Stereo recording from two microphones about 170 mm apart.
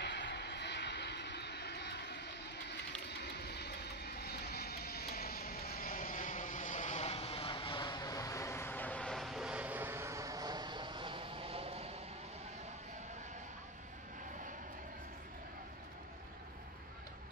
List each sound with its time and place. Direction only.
0.0 s vehicle: 90° left; by 11.9 s 35° right (ahead or behind)